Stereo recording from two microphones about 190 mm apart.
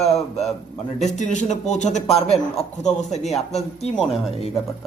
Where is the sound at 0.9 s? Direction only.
35° left (ahead or behind).